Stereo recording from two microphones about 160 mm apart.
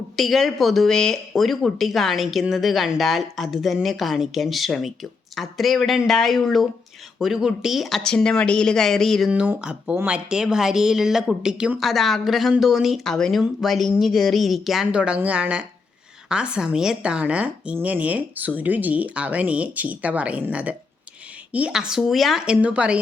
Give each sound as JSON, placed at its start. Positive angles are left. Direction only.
{"t": 0.2, "sound": "a woman's voice", "side_deg": 0}